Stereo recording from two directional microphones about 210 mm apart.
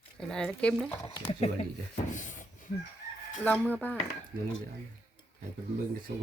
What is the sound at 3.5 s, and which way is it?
Speech, 10° left (ahead or behind).